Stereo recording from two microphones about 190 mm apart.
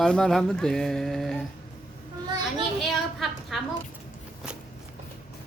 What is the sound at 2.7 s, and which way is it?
Speech, centre (ahead or behind).